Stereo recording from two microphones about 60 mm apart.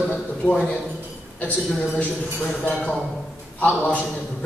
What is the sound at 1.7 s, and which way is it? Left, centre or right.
Speech, left.